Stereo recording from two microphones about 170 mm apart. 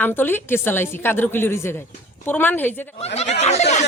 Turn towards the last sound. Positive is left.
turn(degrees=40)  # may be behind; listen again after turning